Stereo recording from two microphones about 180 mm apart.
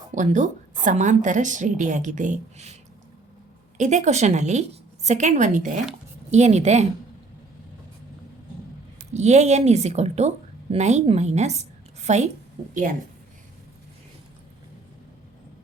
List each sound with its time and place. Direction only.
0.1 s a woman's voice: 45° right (ahead or behind)
3.8 s speech: 40° right (ahead or behind)
9.1 s a woman's voice: 40° right (ahead or behind)